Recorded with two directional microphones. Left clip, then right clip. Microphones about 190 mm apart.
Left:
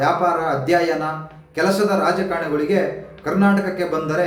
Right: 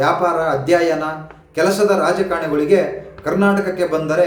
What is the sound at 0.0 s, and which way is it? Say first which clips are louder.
A man's voice: right 2 dB; 15° right (ahead or behind).